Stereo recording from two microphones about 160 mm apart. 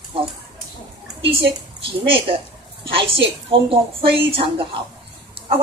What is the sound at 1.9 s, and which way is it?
A woman's voice, 35° right (ahead or behind).